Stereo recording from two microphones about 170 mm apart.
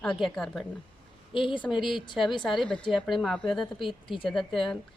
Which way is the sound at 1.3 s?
30° left (ahead or behind).